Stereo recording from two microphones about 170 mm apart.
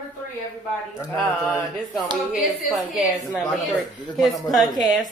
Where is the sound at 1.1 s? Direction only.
10° left (ahead or behind).